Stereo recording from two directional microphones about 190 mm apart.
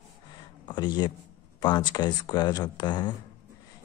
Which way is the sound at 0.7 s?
25° left (ahead or behind).